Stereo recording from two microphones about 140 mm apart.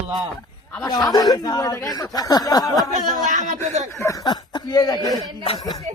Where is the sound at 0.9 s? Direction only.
30° left (ahead or behind).